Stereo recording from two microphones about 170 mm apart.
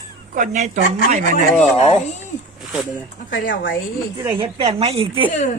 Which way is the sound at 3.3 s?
90° left.